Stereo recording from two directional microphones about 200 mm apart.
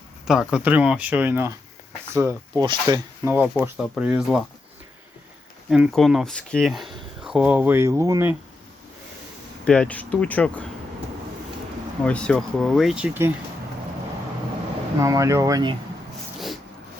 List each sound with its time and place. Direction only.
0.3 s speech: 5° right (ahead or behind)
5.7 s speech: centre (ahead or behind)
9.6 s speech: 5° left (ahead or behind)
12.0 s speech: 5° left (ahead or behind)
14.9 s speech: 15° right (ahead or behind)